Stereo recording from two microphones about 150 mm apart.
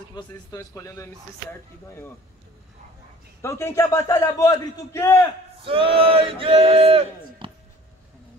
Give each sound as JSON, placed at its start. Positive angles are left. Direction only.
{"t": 0.1, "sound": "a man's voice", "side_deg": 25}
{"t": 3.4, "sound": "a man's voice", "side_deg": 20}
{"t": 5.6, "sound": "speech", "side_deg": -35}